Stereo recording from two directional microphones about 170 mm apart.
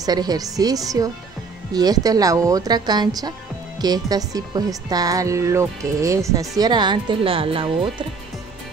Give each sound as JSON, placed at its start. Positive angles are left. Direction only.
{"t": 0.0, "sound": "speech", "side_deg": -25}